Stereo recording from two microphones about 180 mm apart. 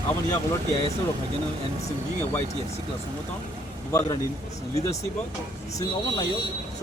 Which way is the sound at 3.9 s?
20° left (ahead or behind).